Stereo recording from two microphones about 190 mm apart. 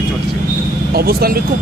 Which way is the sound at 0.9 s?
55° right (ahead or behind).